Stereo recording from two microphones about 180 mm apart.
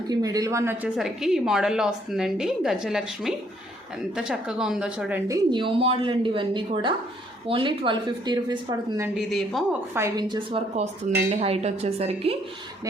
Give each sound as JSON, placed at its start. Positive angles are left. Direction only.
{"t": 0.1, "sound": "a woman's voice", "side_deg": -20}
{"t": 0.9, "sound": "a woman's voice", "side_deg": 0}
{"t": 5.3, "sound": "a woman's voice", "side_deg": -25}
{"t": 9.1, "sound": "a woman's voice", "side_deg": 0}
{"t": 9.9, "sound": "a woman's voice", "side_deg": -20}